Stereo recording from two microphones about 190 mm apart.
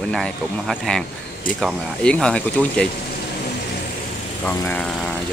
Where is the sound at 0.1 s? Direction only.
5° left (ahead or behind).